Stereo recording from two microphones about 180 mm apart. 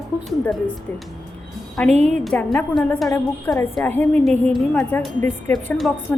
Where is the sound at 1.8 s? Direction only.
40° right (ahead or behind).